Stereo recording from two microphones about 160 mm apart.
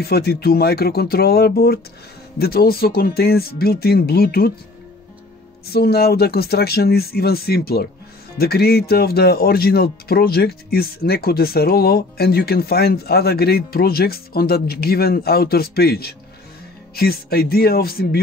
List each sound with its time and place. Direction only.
0.0 s speech: 80° left
5.7 s speech: 80° left